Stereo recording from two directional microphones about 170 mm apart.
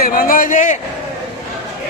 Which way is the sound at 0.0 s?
55° left (ahead or behind).